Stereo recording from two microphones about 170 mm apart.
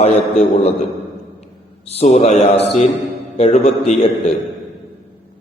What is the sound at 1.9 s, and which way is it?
A man's voice, 40° left (ahead or behind).